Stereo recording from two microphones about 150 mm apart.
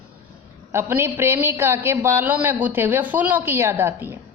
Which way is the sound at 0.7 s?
15° right (ahead or behind).